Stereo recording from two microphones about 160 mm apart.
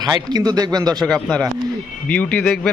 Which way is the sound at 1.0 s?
Centre (ahead or behind).